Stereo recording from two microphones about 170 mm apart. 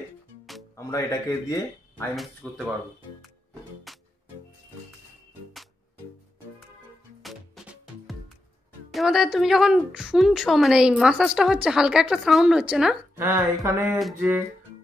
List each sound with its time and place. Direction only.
0.7 s speech: 20° left (ahead or behind)
2.1 s a woman's voice: centre (ahead or behind)
3.9 s music: centre (ahead or behind)
7.2 s music: centre (ahead or behind)
8.9 s a woman's voice: centre (ahead or behind)
13.1 s a sound: 15° right (ahead or behind)
13.9 s a woman's voice: 5° right (ahead or behind)